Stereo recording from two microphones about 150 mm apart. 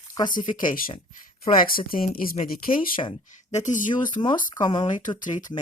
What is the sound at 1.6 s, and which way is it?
Speech, 75° left (ahead or behind).